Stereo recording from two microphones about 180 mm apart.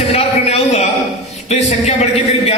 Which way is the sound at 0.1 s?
35° left (ahead or behind).